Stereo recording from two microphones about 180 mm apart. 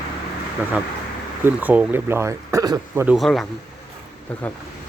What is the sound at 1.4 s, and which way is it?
Speech, 10° right (ahead or behind).